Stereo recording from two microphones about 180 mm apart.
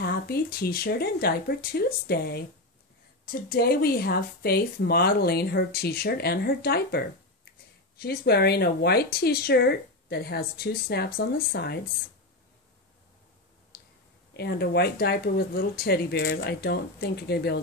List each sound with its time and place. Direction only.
0.0 s speech: 60° left (ahead or behind)
13.7 s clicking: 55° left (ahead or behind)
14.3 s speech: 60° left (ahead or behind)